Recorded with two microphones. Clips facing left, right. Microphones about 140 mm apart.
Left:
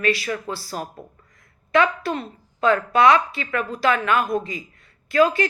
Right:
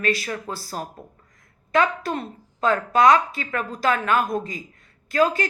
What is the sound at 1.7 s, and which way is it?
A woman's voice, 45° right (ahead or behind).